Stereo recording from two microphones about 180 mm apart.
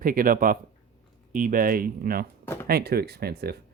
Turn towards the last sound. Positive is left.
turn(degrees=-60)  # may be behind; listen again after turning